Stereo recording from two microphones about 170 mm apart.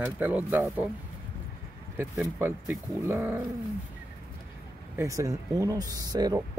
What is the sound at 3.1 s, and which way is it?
Speech, 10° right (ahead or behind).